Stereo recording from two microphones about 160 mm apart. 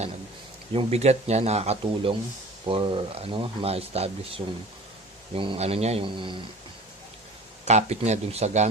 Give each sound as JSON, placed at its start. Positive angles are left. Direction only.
{"t": 0.7, "sound": "speech", "side_deg": -40}
{"t": 7.6, "sound": "speech", "side_deg": -45}